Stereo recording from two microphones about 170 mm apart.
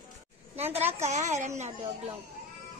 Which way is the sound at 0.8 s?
40° right (ahead or behind).